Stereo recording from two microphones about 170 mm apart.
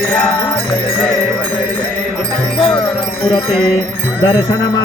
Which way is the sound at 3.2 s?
30° left (ahead or behind).